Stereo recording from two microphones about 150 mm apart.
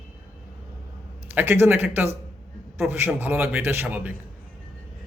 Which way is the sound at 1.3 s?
15° right (ahead or behind).